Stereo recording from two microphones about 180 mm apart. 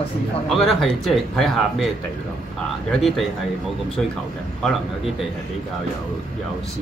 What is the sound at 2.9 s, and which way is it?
Speech, centre (ahead or behind).